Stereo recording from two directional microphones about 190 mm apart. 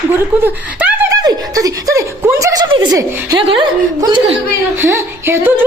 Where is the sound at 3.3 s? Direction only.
25° right (ahead or behind).